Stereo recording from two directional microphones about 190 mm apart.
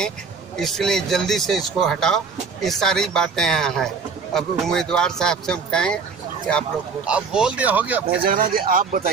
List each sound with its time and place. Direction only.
0.6 s speech: centre (ahead or behind)
7.1 s speech: 5° right (ahead or behind)
8.2 s speech: 45° right (ahead or behind)